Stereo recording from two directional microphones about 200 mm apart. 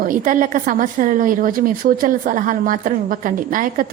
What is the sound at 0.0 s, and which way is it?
A woman's voice, 40° right (ahead or behind).